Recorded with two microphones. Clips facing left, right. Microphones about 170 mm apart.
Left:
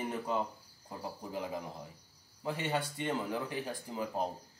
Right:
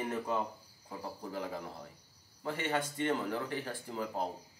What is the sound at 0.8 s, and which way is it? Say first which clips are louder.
Speech: even; 15° left (ahead or behind).